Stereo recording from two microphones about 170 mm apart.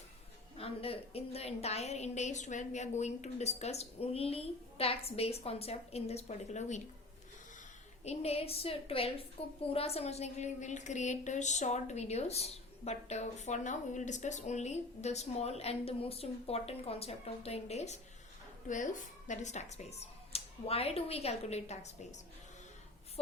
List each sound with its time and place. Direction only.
0.5 s a woman's voice: 35° left (ahead or behind)
8.0 s a woman's voice: 35° left (ahead or behind)